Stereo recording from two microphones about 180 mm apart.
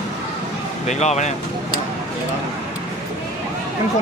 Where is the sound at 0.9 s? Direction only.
40° left (ahead or behind).